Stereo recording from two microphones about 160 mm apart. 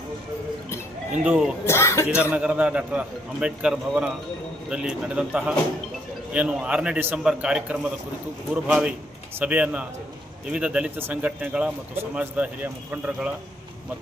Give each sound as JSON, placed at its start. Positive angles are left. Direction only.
{"t": 1.1, "sound": "speech", "side_deg": -5}
{"t": 1.6, "sound": "speech", "side_deg": 15}
{"t": 2.3, "sound": "speech", "side_deg": -10}